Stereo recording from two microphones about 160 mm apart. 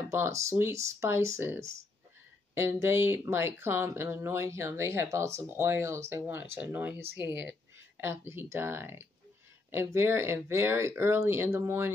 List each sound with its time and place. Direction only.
0.1 s speech: 15° right (ahead or behind)